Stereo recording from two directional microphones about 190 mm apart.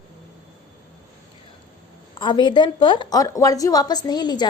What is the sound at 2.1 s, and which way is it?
A woman's voice, 25° left (ahead or behind).